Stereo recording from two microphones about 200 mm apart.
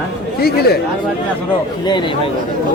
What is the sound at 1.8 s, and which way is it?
Speech, 25° left (ahead or behind).